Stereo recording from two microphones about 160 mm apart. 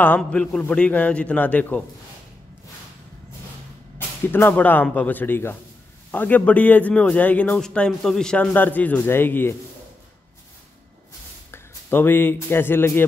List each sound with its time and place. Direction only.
0.0 s a man's voice: 10° left (ahead or behind)
4.3 s a man's voice: 10° left (ahead or behind)
11.5 s speech: 15° left (ahead or behind)